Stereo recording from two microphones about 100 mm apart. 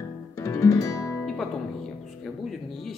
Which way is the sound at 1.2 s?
5° left (ahead or behind).